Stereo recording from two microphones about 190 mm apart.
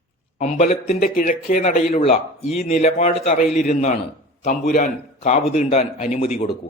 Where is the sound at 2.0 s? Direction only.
35° left (ahead or behind).